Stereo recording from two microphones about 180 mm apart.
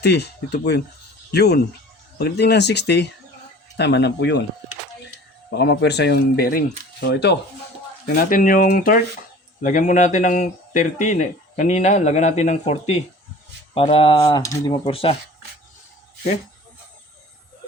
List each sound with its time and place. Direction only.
0.0 s speech: 65° left (ahead or behind)
5.5 s speech: 70° left (ahead or behind)
8.1 s speech: 50° left (ahead or behind); by 14.8 s 20° left (ahead or behind)
14.8 s speech: 30° left (ahead or behind)